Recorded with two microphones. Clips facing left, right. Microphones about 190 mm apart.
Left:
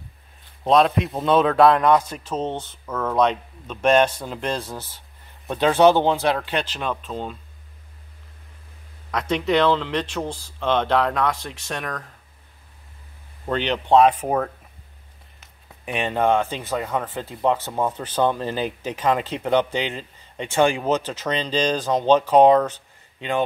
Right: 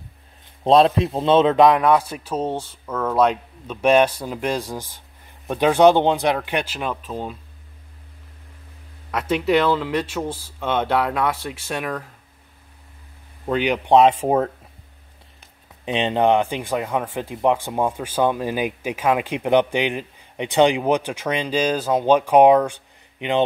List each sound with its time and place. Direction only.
0.7 s speech: 30° right (ahead or behind); by 7.3 s 10° right (ahead or behind)
9.1 s speech: 5° right (ahead or behind)
13.5 s speech: 10° right (ahead or behind)
15.8 s speech: 20° right (ahead or behind)